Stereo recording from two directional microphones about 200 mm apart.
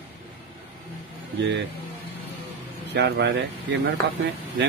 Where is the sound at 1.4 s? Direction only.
65° right (ahead or behind).